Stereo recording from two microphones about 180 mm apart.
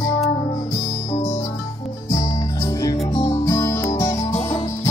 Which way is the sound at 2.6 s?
20° left (ahead or behind).